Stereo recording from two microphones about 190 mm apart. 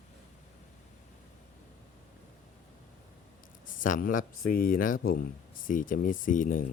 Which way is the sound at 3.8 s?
45° left (ahead or behind).